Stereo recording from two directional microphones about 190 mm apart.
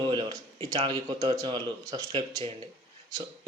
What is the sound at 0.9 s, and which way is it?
Speech, 20° right (ahead or behind).